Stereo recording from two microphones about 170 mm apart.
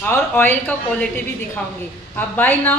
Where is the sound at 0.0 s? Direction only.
10° left (ahead or behind).